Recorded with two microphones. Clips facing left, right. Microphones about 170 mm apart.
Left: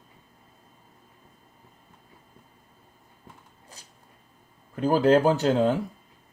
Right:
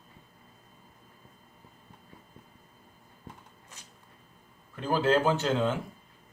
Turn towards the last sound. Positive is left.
turn(degrees=40)  # may be behind; listen again after turning